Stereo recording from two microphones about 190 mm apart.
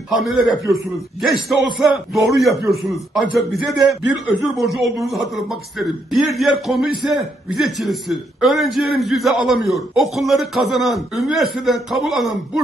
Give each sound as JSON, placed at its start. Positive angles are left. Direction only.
{"t": 0.1, "sound": "a man's voice", "side_deg": 0}
{"t": 1.5, "sound": "a man's voice", "side_deg": 0}